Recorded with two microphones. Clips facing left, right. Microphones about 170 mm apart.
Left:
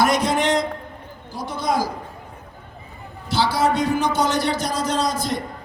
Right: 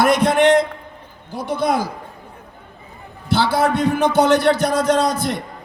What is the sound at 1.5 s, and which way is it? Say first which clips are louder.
Speech: right 3 dB; 60° right (ahead or behind).